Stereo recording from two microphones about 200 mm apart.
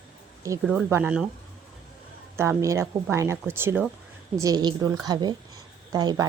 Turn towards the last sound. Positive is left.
turn(degrees=-20)  # may be behind; listen again after turning